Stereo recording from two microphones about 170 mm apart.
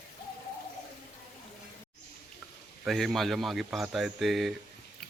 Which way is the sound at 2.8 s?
Centre (ahead or behind).